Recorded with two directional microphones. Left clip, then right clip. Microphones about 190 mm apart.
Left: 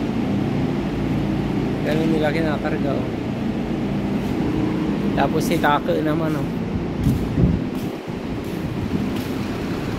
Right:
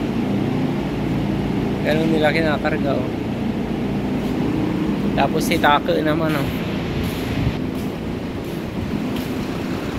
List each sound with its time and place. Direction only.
1.9 s speech: 5° left (ahead or behind)
5.1 s speech: 30° left (ahead or behind)
5.6 s speech: 15° left (ahead or behind)